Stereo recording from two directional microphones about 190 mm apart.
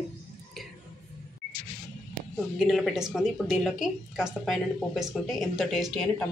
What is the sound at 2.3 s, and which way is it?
A woman's voice, centre (ahead or behind).